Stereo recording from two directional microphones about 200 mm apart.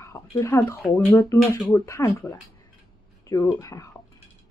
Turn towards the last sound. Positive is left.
turn(degrees=15)  # may be behind; listen again after turning